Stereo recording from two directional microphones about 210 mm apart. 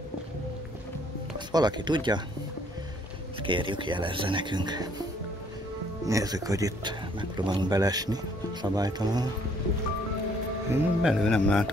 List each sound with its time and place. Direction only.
1.5 s a man's voice: 20° right (ahead or behind)
3.4 s a man's voice: 25° right (ahead or behind)
6.0 s a man's voice: 15° right (ahead or behind)
10.7 s a man's voice: 5° right (ahead or behind)